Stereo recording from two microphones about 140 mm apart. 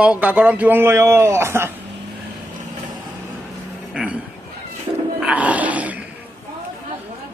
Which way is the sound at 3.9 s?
10° right (ahead or behind).